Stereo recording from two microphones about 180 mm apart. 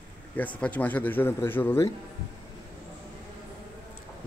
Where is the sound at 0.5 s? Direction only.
10° left (ahead or behind).